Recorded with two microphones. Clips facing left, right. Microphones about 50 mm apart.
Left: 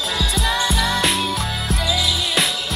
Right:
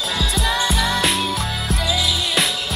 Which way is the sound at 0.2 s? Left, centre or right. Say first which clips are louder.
Even; centre.